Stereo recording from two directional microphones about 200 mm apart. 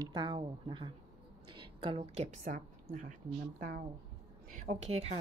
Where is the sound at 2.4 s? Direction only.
35° right (ahead or behind).